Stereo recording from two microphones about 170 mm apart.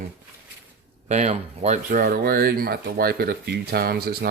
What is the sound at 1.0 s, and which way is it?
Speech, 40° right (ahead or behind).